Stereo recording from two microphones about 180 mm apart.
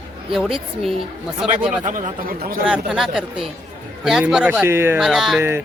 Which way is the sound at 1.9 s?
50° right (ahead or behind).